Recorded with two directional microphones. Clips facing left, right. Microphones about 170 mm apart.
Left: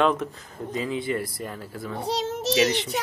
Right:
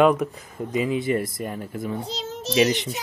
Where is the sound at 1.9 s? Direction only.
70° left (ahead or behind).